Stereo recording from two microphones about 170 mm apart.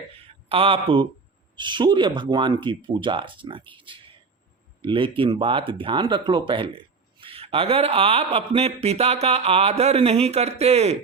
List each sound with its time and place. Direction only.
0.4 s a man's voice: 35° right (ahead or behind)
4.8 s a man's voice: 30° right (ahead or behind)